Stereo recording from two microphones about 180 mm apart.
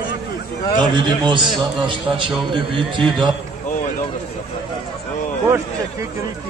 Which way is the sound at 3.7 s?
40° left (ahead or behind).